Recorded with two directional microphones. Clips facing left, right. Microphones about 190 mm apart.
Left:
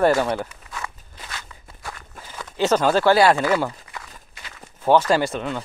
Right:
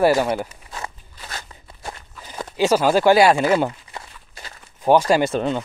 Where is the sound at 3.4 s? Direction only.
25° right (ahead or behind).